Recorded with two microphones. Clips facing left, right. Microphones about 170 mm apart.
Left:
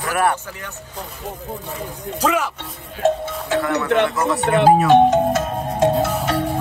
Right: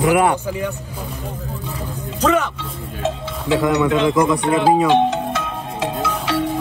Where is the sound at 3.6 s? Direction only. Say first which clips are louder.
Right 3 dB; 15° right (ahead or behind).